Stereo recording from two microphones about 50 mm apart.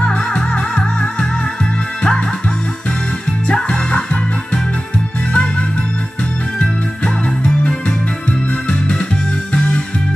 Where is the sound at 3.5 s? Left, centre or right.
Left.